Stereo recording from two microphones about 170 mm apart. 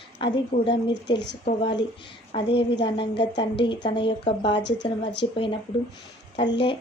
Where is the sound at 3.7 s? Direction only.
30° left (ahead or behind).